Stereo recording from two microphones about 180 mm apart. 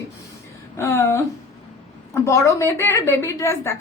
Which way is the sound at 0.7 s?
15° left (ahead or behind).